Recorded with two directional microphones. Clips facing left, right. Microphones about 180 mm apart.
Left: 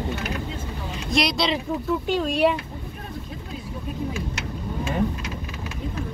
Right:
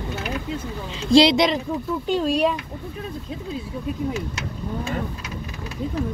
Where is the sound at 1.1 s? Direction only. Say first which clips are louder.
Right 9 dB; 30° right (ahead or behind).